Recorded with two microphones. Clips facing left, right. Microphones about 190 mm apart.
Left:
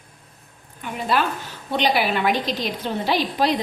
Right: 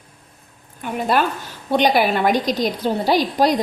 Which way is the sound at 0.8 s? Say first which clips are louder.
Right 3 dB; 45° right (ahead or behind).